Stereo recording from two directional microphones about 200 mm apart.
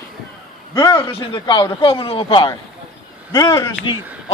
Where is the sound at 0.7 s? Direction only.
25° left (ahead or behind).